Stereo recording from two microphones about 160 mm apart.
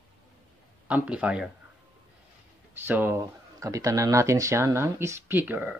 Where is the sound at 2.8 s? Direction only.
10° right (ahead or behind).